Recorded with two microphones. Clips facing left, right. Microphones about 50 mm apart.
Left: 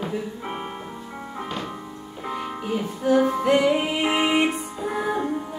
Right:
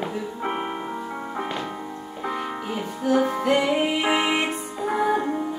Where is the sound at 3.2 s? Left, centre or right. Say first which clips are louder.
Left 2 dB; centre.